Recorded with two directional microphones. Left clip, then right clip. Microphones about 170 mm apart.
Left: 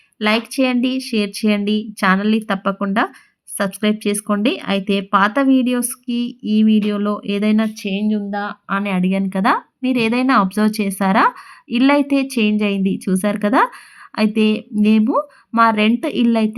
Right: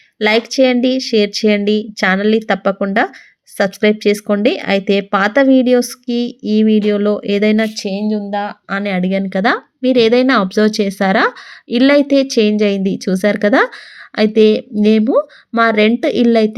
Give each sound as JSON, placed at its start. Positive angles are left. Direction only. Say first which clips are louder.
{"t": 0.2, "sound": "speech", "louder": "right 6 dB", "side_deg": -20}
{"t": 7.9, "sound": "speech", "louder": "right 2 dB", "side_deg": -35}